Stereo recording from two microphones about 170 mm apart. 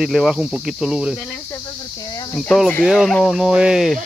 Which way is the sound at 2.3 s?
5° left (ahead or behind).